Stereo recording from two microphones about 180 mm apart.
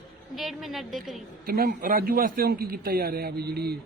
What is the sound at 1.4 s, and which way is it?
A man's voice, 55° right (ahead or behind).